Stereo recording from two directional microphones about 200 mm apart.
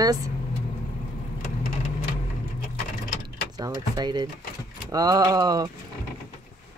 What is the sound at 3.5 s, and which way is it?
Speech, 20° right (ahead or behind).